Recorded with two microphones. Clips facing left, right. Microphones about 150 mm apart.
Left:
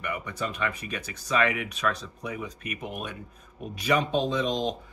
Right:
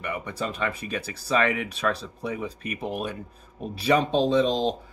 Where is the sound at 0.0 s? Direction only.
30° right (ahead or behind).